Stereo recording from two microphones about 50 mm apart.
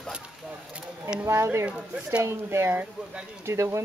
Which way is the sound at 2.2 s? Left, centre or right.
Right.